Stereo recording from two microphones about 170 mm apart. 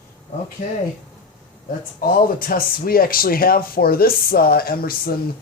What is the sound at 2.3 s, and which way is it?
Speech, 60° left (ahead or behind).